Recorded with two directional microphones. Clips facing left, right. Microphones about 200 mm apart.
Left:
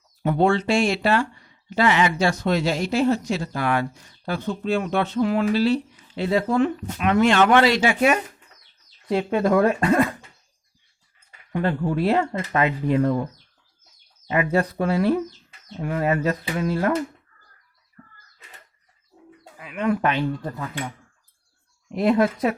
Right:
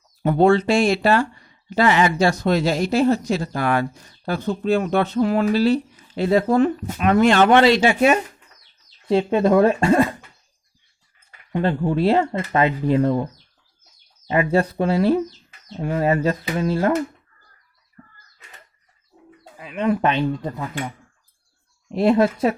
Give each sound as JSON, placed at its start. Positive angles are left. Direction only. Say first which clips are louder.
{"t": 0.2, "sound": "speech", "louder": "right 4 dB", "side_deg": -40}
{"t": 11.5, "sound": "speech", "louder": "right 3 dB", "side_deg": -25}
{"t": 14.3, "sound": "speech", "louder": "right 3 dB", "side_deg": -30}
{"t": 19.5, "sound": "speech", "louder": "right 2 dB", "side_deg": -25}
{"t": 21.8, "sound": "speech", "louder": "right 3 dB", "side_deg": -30}